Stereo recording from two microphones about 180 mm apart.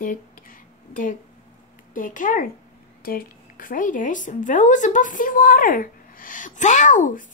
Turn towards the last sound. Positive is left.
turn(degrees=45)  # may be behind; listen again after turning